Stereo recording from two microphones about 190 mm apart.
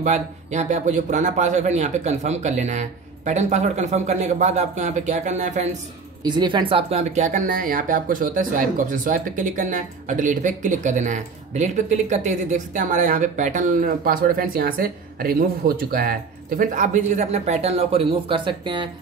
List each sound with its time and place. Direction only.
0.0 s speech: 40° right (ahead or behind)
6.2 s speech: 25° right (ahead or behind)